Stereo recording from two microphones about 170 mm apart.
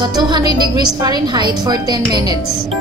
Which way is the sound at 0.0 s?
25° right (ahead or behind).